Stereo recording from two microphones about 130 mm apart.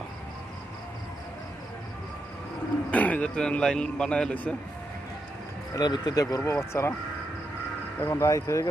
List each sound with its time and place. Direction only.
2.9 s a man's voice: 10° left (ahead or behind)
5.7 s speech: 30° left (ahead or behind)
8.0 s speech: 20° left (ahead or behind)